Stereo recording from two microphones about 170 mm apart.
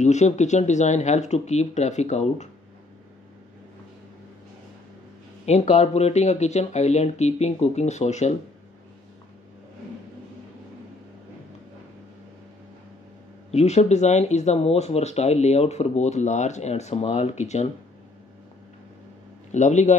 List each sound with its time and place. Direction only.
0.0 s speech: 45° left (ahead or behind)
5.4 s speech: 40° left (ahead or behind)
13.5 s speech: 40° left (ahead or behind)
19.5 s speech: 45° left (ahead or behind)